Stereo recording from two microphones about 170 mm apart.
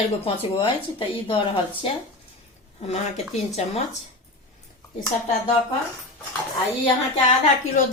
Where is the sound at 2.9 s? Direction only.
40° left (ahead or behind).